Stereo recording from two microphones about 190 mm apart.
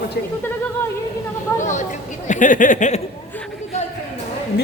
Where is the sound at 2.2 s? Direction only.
40° left (ahead or behind).